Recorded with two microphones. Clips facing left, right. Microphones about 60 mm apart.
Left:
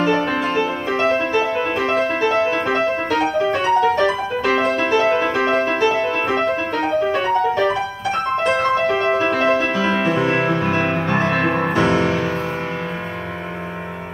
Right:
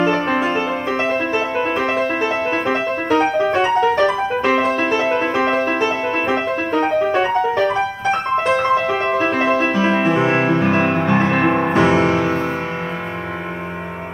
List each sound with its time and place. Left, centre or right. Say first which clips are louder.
0.3 s music: right 1 dB; centre
6.2 s music: even; centre
8.5 s music: right 1 dB; centre